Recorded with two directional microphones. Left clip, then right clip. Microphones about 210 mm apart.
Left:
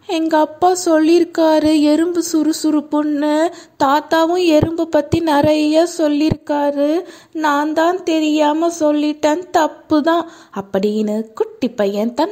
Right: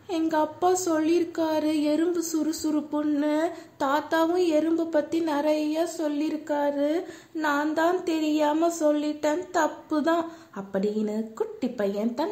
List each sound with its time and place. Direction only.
0.1 s speech: 35° left (ahead or behind)